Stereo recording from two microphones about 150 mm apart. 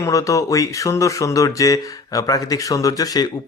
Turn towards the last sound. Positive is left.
turn(degrees=25)  # may be behind; listen again after turning